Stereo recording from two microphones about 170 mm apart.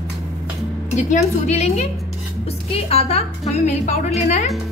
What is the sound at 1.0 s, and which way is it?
A woman's voice, 45° left (ahead or behind).